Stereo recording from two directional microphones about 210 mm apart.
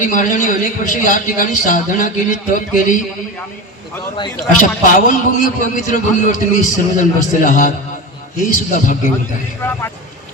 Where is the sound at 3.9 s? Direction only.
20° left (ahead or behind).